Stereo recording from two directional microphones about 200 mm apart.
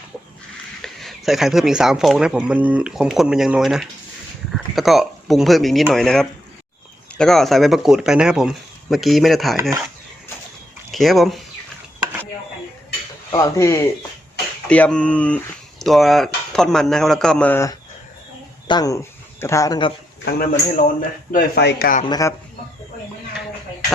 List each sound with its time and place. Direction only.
0.8 s speech: centre (ahead or behind)
9.6 s speech: 15° right (ahead or behind)
10.9 s speech: centre (ahead or behind)
13.3 s speech: 15° left (ahead or behind)
20.2 s a man's voice: 50° left (ahead or behind)
22.0 s speech: 20° left (ahead or behind)